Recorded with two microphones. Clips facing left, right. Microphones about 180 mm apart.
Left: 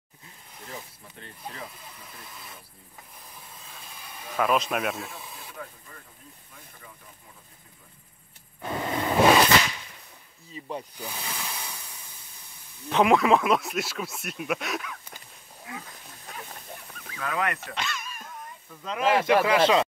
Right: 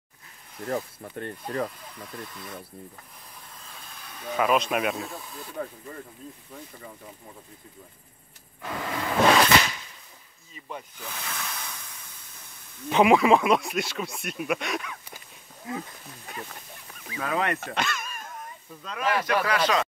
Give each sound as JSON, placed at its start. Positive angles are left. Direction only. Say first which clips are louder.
{"t": 0.7, "sound": "speech", "louder": "right 12 dB", "side_deg": -55}
{"t": 2.2, "sound": "speech", "louder": "right 5 dB", "side_deg": 5}
{"t": 3.7, "sound": "speech", "louder": "left 1 dB", "side_deg": 5}
{"t": 8.5, "sound": "a sound", "louder": "left 3 dB", "side_deg": 25}
{"t": 9.2, "sound": "whip", "louder": "left 1 dB", "side_deg": 10}
{"t": 10.5, "sound": "speech", "louder": "left 4 dB", "side_deg": 30}
{"t": 11.0, "sound": "speech", "louder": "left 1 dB", "side_deg": 15}
{"t": 12.9, "sound": "speech", "louder": "right 2 dB", "side_deg": 0}
{"t": 17.2, "sound": "speech", "louder": "right 2 dB", "side_deg": -30}
{"t": 17.6, "sound": "speech", "louder": "right 4 dB", "side_deg": -50}
{"t": 18.9, "sound": "speech", "louder": "left 4 dB", "side_deg": 25}